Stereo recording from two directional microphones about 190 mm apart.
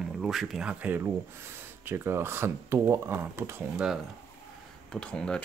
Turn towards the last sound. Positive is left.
turn(degrees=5)  # may be behind; listen again after turning